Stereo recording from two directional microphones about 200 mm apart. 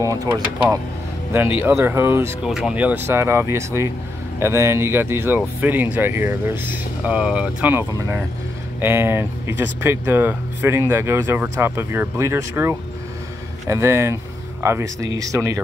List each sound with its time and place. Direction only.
0.0 s speech: 15° right (ahead or behind)